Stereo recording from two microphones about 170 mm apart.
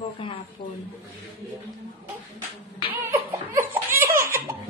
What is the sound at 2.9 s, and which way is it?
Laughter, 15° right (ahead or behind).